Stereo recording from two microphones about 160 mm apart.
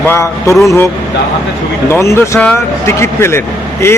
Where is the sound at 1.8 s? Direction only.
15° left (ahead or behind).